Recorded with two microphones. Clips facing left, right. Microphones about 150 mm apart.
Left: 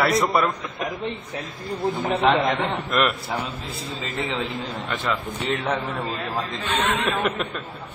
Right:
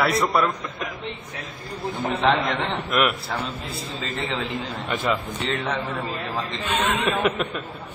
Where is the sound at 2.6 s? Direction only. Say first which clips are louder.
Even; centre (ahead or behind).